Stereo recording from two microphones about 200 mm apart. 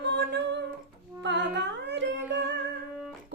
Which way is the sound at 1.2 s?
60° right (ahead or behind).